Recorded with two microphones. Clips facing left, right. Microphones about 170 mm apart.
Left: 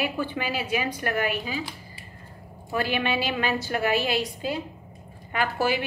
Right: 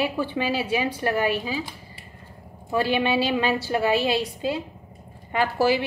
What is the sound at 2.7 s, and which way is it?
A woman's voice, 25° right (ahead or behind).